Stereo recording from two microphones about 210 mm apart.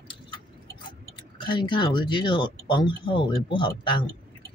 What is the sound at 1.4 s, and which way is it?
Speech, 25° left (ahead or behind).